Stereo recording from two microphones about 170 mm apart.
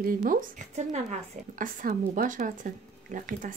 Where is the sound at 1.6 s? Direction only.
55° right (ahead or behind).